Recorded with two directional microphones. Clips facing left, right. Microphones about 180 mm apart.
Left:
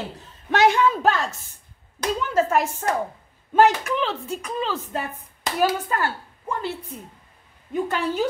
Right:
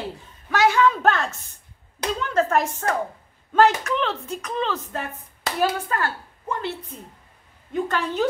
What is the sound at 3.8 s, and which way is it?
Speech, 5° left (ahead or behind).